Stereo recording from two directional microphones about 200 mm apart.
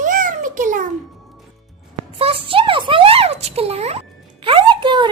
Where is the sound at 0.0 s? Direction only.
40° right (ahead or behind).